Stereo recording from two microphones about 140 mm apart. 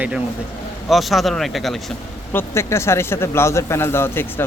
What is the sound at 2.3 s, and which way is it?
Speech, 20° left (ahead or behind).